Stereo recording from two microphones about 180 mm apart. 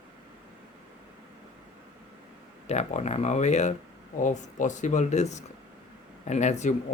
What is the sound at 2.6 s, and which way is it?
Speech, 40° left (ahead or behind).